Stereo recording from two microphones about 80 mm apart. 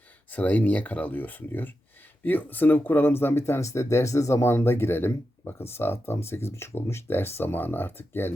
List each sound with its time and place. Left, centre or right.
0.3 s speech: centre